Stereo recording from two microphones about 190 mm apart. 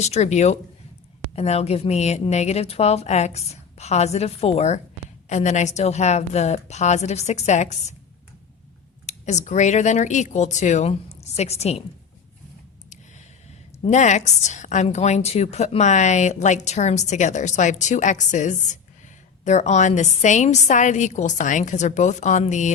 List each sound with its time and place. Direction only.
0.0 s a woman's voice: 35° left (ahead or behind)
9.0 s a woman's voice: 35° left (ahead or behind)
13.8 s a woman's voice: 40° left (ahead or behind)